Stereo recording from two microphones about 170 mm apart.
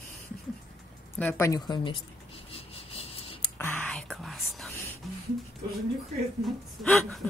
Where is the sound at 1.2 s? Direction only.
20° left (ahead or behind).